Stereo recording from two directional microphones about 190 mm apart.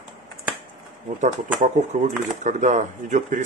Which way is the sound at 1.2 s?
40° right (ahead or behind).